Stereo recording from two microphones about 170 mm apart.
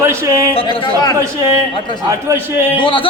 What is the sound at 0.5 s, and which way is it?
Speech, 30° left (ahead or behind).